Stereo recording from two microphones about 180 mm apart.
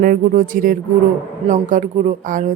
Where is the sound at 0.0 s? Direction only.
50° right (ahead or behind).